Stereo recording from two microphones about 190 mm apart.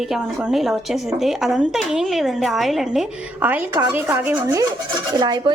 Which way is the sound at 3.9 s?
10° right (ahead or behind).